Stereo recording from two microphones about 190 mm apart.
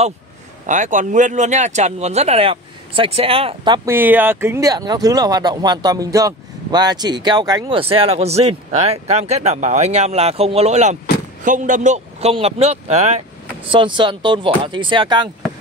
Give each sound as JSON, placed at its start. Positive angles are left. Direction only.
{"t": 0.7, "sound": "speech", "side_deg": -40}
{"t": 3.9, "sound": "speech", "side_deg": -10}
{"t": 13.7, "sound": "speech", "side_deg": -25}